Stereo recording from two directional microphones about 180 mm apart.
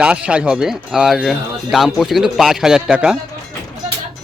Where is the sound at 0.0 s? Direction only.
5° right (ahead or behind).